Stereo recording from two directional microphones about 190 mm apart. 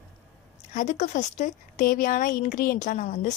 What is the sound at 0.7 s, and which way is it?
A woman's voice, 40° left (ahead or behind).